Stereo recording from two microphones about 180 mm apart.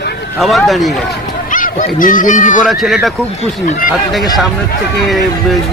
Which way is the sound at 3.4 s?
40° left (ahead or behind).